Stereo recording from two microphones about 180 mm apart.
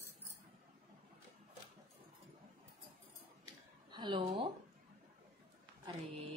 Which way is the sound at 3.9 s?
25° right (ahead or behind).